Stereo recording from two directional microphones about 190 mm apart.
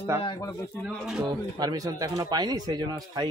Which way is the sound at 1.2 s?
20° right (ahead or behind).